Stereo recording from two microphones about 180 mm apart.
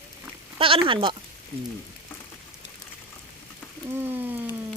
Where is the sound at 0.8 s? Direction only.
30° right (ahead or behind).